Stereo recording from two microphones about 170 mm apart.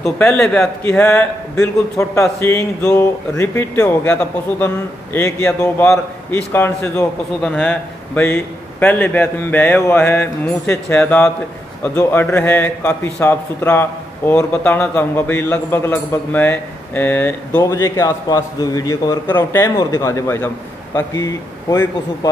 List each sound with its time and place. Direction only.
0.0 s a man's voice: 5° left (ahead or behind)